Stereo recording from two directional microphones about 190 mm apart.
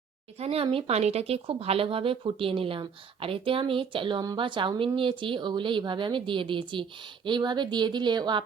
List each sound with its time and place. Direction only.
0.3 s speech: 30° right (ahead or behind)